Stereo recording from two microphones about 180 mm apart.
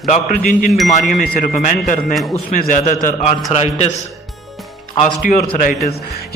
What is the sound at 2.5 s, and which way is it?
Speech, 45° left (ahead or behind).